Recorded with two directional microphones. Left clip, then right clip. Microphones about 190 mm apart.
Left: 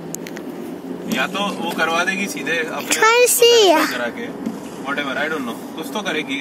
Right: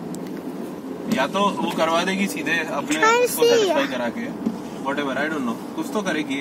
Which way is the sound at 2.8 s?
30° left (ahead or behind).